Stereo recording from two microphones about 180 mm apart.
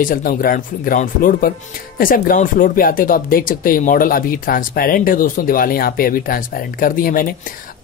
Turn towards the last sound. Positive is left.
turn(degrees=50)  # may be behind; listen again after turning